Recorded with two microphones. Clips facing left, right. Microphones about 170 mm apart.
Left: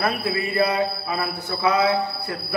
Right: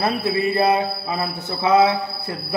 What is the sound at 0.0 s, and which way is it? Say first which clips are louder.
Speech: right 3 dB; 25° right (ahead or behind).